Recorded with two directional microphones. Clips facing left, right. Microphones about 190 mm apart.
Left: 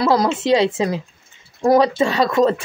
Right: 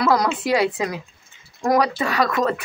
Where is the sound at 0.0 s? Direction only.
25° left (ahead or behind).